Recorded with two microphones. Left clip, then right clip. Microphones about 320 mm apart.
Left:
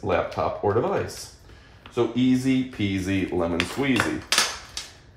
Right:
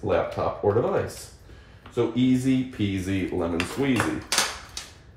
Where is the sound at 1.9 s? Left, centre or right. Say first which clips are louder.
Left 1 dB; left.